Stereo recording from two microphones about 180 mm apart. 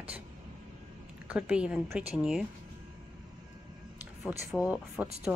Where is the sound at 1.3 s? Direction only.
5° right (ahead or behind).